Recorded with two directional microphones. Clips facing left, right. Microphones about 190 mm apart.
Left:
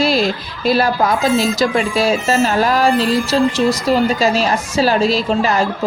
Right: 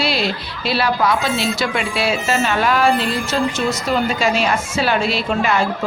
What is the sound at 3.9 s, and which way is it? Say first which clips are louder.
A woman's voice: left 2 dB; 35° left (ahead or behind).